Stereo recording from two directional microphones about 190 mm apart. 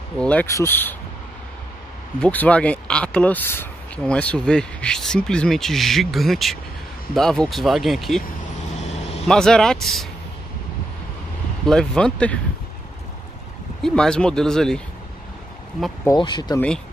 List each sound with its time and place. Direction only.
0.2 s speech: 5° left (ahead or behind)
2.1 s speech: 5° left (ahead or behind)
8.7 s vehicle: 35° left (ahead or behind)
9.3 s speech: 5° left (ahead or behind)
11.6 s speech: 5° left (ahead or behind)
13.8 s speech: 5° left (ahead or behind)
16.1 s speech: 25° left (ahead or behind)
16.5 s speech: 5° left (ahead or behind)